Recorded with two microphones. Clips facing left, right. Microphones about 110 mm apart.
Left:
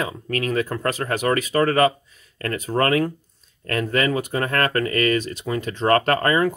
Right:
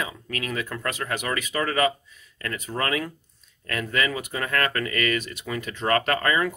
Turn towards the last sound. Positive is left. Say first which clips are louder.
# left 5 dB
turn(degrees=35)  # may be behind; listen again after turning